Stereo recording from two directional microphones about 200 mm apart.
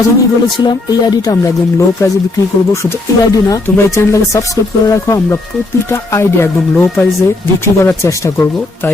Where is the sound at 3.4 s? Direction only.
15° left (ahead or behind).